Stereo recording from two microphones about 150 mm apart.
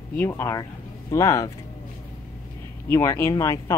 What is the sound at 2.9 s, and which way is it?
Speech, 15° left (ahead or behind).